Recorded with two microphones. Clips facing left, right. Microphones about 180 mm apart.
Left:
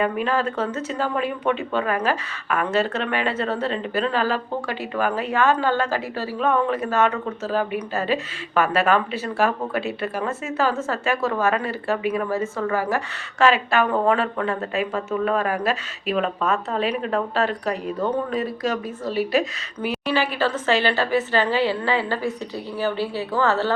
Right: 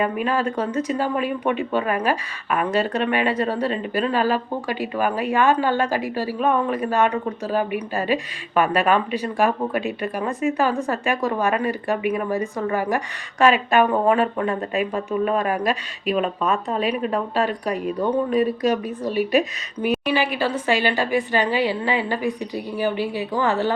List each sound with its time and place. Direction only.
0.3 s speech: 15° right (ahead or behind)